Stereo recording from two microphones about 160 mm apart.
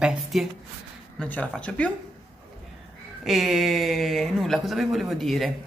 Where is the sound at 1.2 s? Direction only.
10° left (ahead or behind).